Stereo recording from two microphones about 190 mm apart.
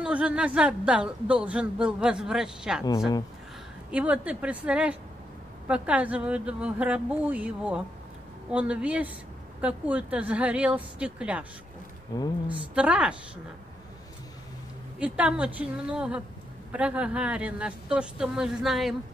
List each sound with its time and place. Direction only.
0.0 s speech: 5° right (ahead or behind)
3.9 s speech: 5° right (ahead or behind)
12.1 s speech: 20° left (ahead or behind)
12.7 s speech: 5° right (ahead or behind)
15.0 s speech: 5° right (ahead or behind)